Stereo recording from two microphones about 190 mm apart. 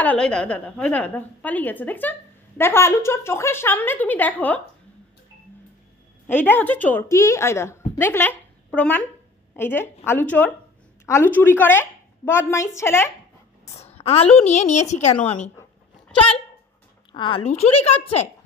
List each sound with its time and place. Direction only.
0.0 s a woman's voice: 5° left (ahead or behind)
6.2 s a woman's voice: 10° left (ahead or behind)
13.9 s a woman's voice: 30° left (ahead or behind)
17.1 s a woman's voice: 25° left (ahead or behind)